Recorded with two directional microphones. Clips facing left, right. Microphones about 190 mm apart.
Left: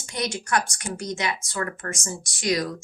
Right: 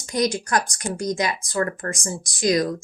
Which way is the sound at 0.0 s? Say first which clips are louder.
Right 7 dB; 35° right (ahead or behind).